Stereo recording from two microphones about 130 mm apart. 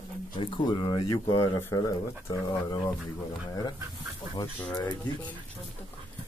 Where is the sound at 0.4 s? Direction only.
40° left (ahead or behind).